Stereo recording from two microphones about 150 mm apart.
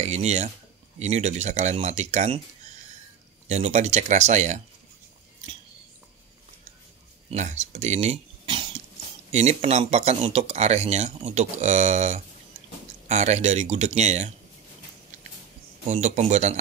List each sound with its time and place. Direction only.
0.0 s speech: 45° right (ahead or behind)
3.4 s speech: 50° right (ahead or behind)
7.2 s speech: 50° right (ahead or behind)
9.3 s speech: 45° right (ahead or behind)
15.9 s speech: 50° right (ahead or behind)